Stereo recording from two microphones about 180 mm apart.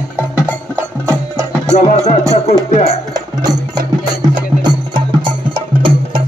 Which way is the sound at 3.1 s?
20° right (ahead or behind).